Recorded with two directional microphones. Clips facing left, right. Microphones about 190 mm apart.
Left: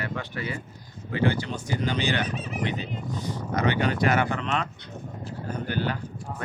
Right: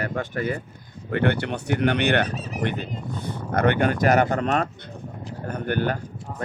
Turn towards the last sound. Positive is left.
turn(degrees=-55)  # may be behind; listen again after turning